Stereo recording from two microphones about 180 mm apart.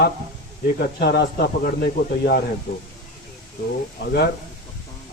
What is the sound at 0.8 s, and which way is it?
Speech, 60° left (ahead or behind).